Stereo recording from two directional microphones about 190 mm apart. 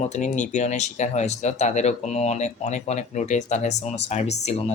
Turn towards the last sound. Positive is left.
turn(degrees=35)  # may be behind; listen again after turning